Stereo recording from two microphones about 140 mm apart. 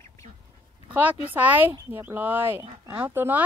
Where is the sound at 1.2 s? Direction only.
10° right (ahead or behind).